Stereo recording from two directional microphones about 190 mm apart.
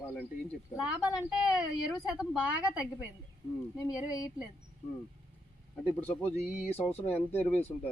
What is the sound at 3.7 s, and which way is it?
Speech, 20° left (ahead or behind).